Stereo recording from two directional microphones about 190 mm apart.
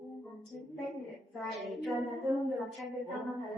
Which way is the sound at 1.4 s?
Centre (ahead or behind).